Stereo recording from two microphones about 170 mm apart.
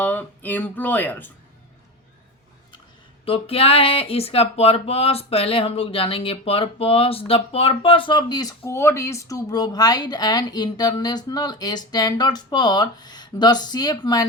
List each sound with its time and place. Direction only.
0.0 s speech: 10° left (ahead or behind)
3.2 s speech: 35° left (ahead or behind)